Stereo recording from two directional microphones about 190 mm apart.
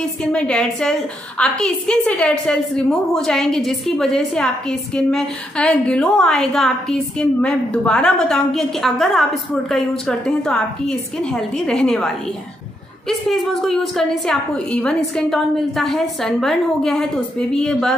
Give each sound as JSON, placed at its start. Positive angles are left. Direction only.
{"t": 0.2, "sound": "a woman's voice", "side_deg": 5}
{"t": 13.3, "sound": "a woman's voice", "side_deg": 0}